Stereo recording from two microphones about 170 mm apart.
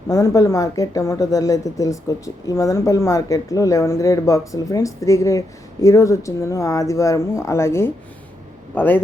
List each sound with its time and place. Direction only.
0.1 s a woman's voice: 20° left (ahead or behind)